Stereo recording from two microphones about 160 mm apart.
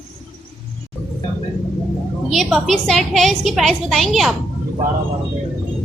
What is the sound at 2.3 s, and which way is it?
A woman's voice, centre (ahead or behind).